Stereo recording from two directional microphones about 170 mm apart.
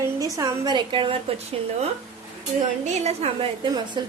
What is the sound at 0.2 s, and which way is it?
Speech, 20° right (ahead or behind).